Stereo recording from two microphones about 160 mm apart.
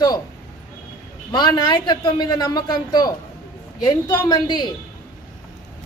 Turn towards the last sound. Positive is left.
turn(degrees=25)  # may be behind; listen again after turning